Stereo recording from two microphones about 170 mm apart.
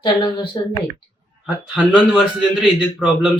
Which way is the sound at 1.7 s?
5° right (ahead or behind).